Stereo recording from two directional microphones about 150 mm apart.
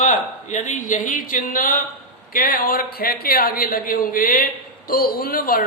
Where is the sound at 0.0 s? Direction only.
55° left (ahead or behind).